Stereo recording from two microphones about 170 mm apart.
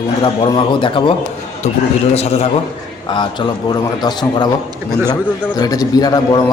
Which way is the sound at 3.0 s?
25° left (ahead or behind).